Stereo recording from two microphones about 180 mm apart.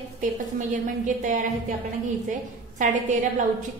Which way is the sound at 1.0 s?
45° right (ahead or behind).